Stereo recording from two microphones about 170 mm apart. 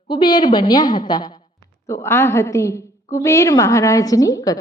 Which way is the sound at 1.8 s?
15° left (ahead or behind).